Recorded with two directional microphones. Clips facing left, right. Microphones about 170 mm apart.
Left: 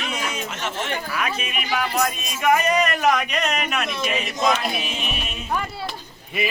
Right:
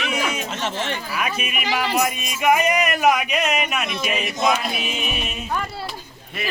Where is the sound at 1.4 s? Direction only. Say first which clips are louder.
Right 1 dB; 10° right (ahead or behind).